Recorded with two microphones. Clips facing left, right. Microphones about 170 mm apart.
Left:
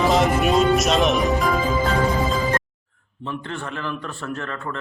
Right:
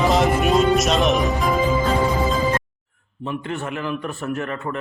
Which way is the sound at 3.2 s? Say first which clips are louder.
Right 3 dB; 15° right (ahead or behind).